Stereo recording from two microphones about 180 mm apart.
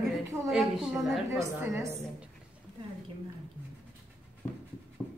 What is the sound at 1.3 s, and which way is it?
Speech, 15° right (ahead or behind).